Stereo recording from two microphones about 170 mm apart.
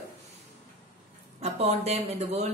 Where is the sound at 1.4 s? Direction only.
40° right (ahead or behind).